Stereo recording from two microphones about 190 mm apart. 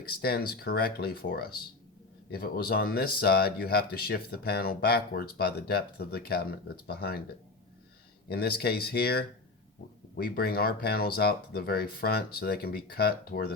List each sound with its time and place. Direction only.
0.2 s speech: 55° left (ahead or behind)
8.3 s speech: 55° left (ahead or behind)